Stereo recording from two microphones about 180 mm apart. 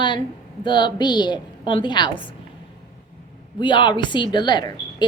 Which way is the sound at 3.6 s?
25° left (ahead or behind).